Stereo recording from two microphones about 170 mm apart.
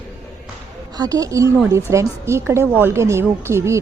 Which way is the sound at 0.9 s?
20° right (ahead or behind).